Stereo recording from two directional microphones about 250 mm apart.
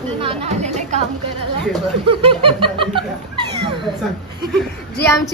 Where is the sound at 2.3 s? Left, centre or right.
Centre.